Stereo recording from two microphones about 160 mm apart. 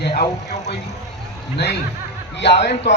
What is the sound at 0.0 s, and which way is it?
Vehicle, 75° left (ahead or behind).